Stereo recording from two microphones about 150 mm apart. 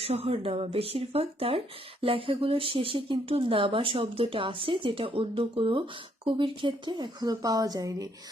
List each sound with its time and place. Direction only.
0.0 s speech: 40° right (ahead or behind); by 8.0 s 25° right (ahead or behind)